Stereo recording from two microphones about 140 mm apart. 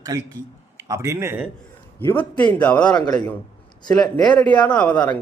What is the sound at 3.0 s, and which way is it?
A man's voice, 30° left (ahead or behind).